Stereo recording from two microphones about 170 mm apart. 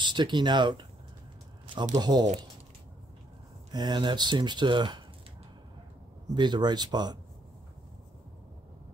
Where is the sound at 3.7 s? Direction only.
25° right (ahead or behind).